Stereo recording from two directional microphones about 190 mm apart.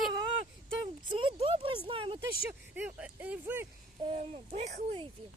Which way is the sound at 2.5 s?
5° right (ahead or behind).